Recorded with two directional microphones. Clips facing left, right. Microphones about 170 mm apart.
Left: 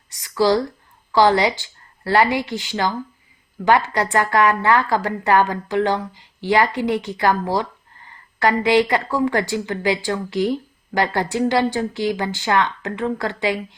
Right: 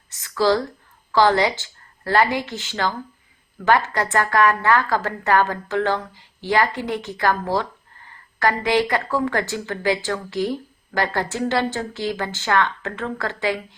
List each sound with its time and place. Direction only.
0.2 s a woman's voice: 15° left (ahead or behind)